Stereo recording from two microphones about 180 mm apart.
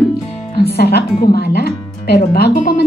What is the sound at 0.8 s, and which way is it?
Speech, 65° left (ahead or behind).